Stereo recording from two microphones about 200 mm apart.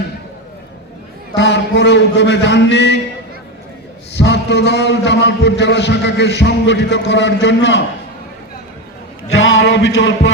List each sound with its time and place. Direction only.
1.4 s a man's voice: 60° left (ahead or behind)
4.1 s a man's voice: 60° left (ahead or behind)
9.3 s a sound: 75° left (ahead or behind)